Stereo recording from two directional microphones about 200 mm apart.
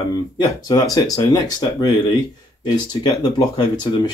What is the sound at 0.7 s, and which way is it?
Speech, 20° left (ahead or behind).